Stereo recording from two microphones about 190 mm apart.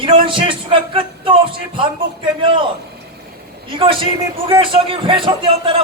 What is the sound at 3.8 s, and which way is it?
A man's voice, 30° right (ahead or behind).